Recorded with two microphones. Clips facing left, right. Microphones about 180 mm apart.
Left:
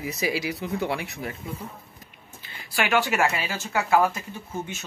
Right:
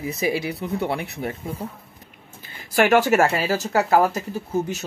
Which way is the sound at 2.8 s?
45° right (ahead or behind).